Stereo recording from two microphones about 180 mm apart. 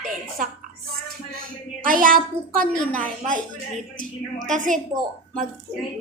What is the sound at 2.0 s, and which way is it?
Speech, 50° right (ahead or behind).